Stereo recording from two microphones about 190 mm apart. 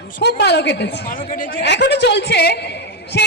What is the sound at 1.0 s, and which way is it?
Speech, 45° left (ahead or behind).